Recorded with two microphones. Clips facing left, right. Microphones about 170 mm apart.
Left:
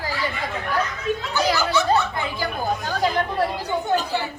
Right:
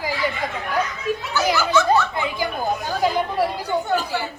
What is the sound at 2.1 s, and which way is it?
Speech, 15° right (ahead or behind).